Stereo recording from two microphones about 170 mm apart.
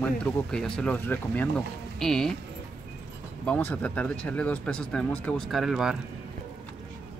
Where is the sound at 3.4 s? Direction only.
10° left (ahead or behind).